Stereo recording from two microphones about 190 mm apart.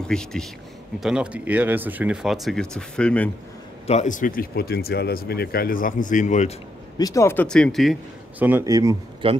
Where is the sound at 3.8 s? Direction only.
40° left (ahead or behind).